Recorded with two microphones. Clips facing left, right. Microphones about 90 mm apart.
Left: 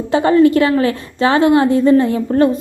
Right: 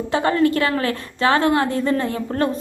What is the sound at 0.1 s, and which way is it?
A woman's voice, 20° left (ahead or behind).